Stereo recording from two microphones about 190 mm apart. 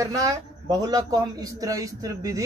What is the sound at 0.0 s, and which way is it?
A woman's voice, 15° right (ahead or behind).